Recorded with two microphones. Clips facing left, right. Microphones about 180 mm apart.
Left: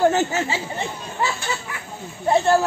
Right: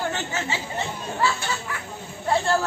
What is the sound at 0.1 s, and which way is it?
Speech, 40° left (ahead or behind).